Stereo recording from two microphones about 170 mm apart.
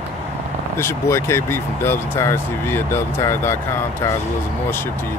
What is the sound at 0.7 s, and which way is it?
Speech, 15° left (ahead or behind).